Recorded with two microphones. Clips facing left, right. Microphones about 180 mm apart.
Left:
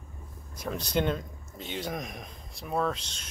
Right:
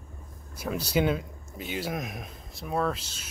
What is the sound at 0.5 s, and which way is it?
Speech, 5° right (ahead or behind).